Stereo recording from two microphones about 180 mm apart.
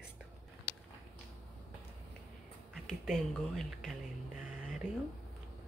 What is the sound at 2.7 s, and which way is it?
Speech, centre (ahead or behind).